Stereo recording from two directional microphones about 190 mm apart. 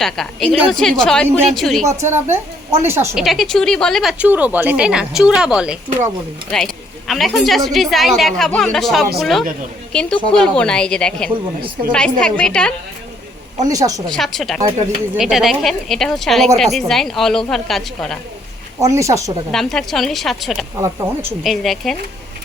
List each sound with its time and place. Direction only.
0.0 s a woman's voice: centre (ahead or behind)
1.9 s a woman's voice: 15° right (ahead or behind)
3.2 s a woman's voice: centre (ahead or behind)
7.1 s a woman's voice: centre (ahead or behind)
13.6 s a woman's voice: 20° right (ahead or behind)
14.1 s a woman's voice: centre (ahead or behind)
18.8 s a woman's voice: 15° right (ahead or behind)
19.5 s a woman's voice: centre (ahead or behind)
20.7 s a woman's voice: 15° right (ahead or behind)
21.4 s a woman's voice: centre (ahead or behind)